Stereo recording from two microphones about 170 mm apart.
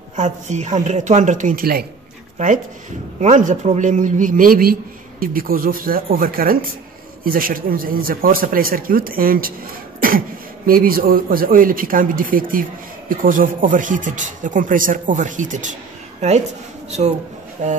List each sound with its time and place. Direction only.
0.1 s speech: 45° right (ahead or behind); by 1.9 s 60° right (ahead or behind)
2.3 s speech: 45° right (ahead or behind)
10.0 s cough: 55° right (ahead or behind)
10.7 s speech: 55° right (ahead or behind); by 16.4 s 40° right (ahead or behind)
17.6 s speech: 45° right (ahead or behind)